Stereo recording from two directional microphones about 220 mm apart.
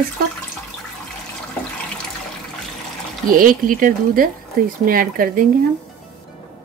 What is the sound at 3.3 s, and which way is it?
Speech, 40° right (ahead or behind).